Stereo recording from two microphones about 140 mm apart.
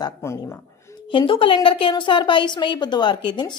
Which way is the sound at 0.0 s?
20° left (ahead or behind).